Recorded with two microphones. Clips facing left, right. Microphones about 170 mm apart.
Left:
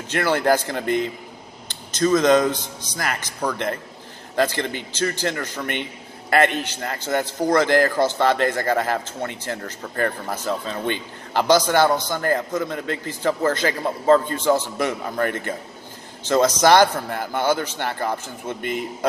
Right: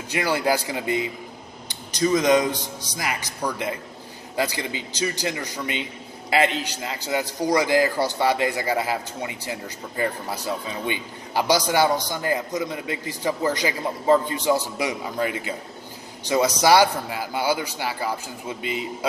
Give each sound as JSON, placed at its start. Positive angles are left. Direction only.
{"t": 0.1, "sound": "speech", "side_deg": -10}
{"t": 1.7, "sound": "a sound", "side_deg": -15}
{"t": 2.5, "sound": "speech", "side_deg": -15}
{"t": 6.3, "sound": "a man's voice", "side_deg": 55}
{"t": 7.4, "sound": "speech", "side_deg": -15}
{"t": 16.3, "sound": "speech", "side_deg": -15}
{"t": 18.6, "sound": "a man's voice", "side_deg": 55}